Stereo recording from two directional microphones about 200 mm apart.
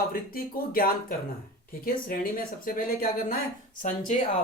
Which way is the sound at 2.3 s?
45° left (ahead or behind).